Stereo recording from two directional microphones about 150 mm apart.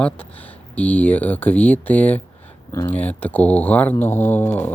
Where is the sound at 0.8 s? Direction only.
10° left (ahead or behind).